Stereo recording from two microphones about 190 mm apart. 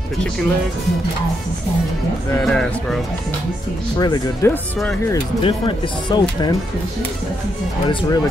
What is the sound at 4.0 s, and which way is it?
Speech, 20° left (ahead or behind).